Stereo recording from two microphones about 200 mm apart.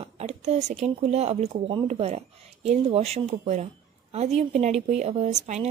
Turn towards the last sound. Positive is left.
turn(degrees=-35)  # may be behind; listen again after turning